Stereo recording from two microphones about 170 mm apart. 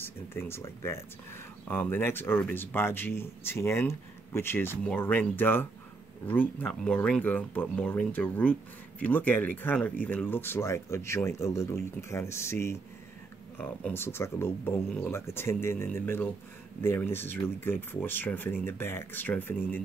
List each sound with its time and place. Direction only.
0.0 s speech: 15° left (ahead or behind)